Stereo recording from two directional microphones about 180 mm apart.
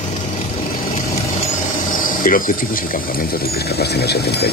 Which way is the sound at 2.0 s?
50° left (ahead or behind).